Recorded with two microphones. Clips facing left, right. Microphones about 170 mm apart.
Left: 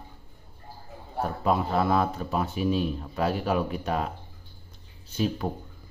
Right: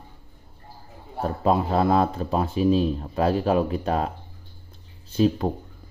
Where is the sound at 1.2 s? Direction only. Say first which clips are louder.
Right 3 dB; 30° right (ahead or behind).